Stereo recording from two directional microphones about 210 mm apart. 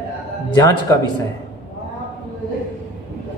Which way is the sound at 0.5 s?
20° left (ahead or behind).